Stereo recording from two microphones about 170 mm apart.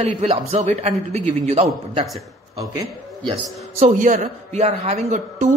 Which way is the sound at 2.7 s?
25° right (ahead or behind).